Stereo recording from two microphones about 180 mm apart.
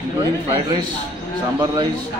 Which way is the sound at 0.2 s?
25° right (ahead or behind).